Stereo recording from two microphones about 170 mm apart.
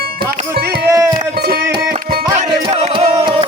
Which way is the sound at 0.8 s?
15° right (ahead or behind).